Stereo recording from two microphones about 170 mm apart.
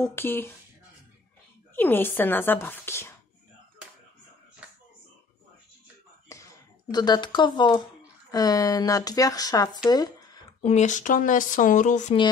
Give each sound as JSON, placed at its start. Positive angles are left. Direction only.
{"t": 0.0, "sound": "speech", "side_deg": 15}
{"t": 1.8, "sound": "speech", "side_deg": 10}
{"t": 6.3, "sound": "a sound", "side_deg": 20}
{"t": 6.9, "sound": "speech", "side_deg": 25}
{"t": 9.8, "sound": "a sound", "side_deg": 25}
{"t": 10.6, "sound": "speech", "side_deg": 40}